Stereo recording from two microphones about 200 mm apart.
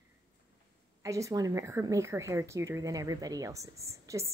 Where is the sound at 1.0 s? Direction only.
15° right (ahead or behind).